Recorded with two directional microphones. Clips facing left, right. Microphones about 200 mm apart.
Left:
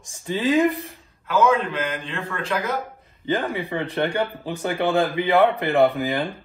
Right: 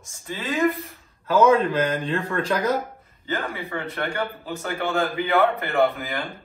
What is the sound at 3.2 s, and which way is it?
Speech, 15° left (ahead or behind).